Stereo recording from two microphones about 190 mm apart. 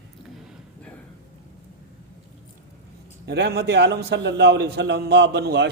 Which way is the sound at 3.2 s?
60° right (ahead or behind).